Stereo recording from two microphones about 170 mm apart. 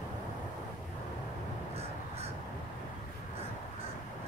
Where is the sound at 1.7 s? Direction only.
35° right (ahead or behind).